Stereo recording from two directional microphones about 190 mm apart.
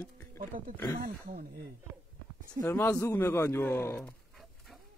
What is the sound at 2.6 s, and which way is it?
Speech, 10° left (ahead or behind).